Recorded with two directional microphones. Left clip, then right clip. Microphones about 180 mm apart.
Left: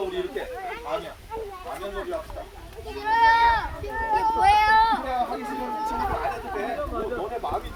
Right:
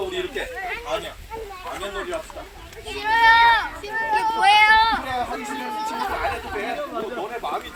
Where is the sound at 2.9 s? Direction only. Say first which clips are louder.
Right 4 dB; 5° left (ahead or behind).